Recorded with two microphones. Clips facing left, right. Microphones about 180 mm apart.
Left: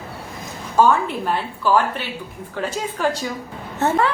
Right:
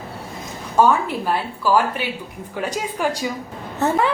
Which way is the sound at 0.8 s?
5° right (ahead or behind).